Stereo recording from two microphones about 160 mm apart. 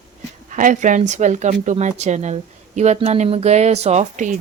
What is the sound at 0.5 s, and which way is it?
Speech, 55° right (ahead or behind).